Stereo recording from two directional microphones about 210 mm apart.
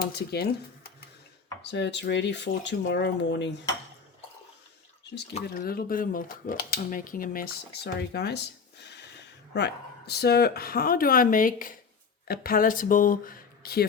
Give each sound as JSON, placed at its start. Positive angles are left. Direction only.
{"t": 0.0, "sound": "speech", "side_deg": 50}
{"t": 1.6, "sound": "speech", "side_deg": 55}
{"t": 5.5, "sound": "speech", "side_deg": 45}
{"t": 8.1, "sound": "speech", "side_deg": 50}